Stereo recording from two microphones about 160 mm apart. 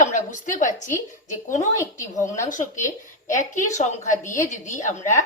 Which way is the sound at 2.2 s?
50° left (ahead or behind).